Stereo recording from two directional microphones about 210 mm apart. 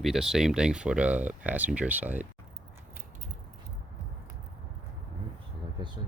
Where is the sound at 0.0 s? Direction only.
Centre (ahead or behind).